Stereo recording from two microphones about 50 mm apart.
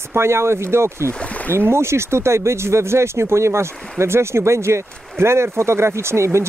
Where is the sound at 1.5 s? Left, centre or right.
Right.